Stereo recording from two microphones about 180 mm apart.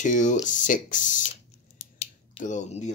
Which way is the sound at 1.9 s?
40° left (ahead or behind).